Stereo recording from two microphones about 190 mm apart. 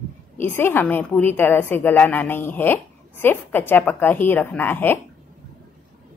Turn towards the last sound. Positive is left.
turn(degrees=10)  # may be behind; listen again after turning